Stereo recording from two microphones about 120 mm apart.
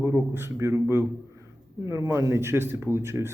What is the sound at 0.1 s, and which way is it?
Speech, 15° right (ahead or behind).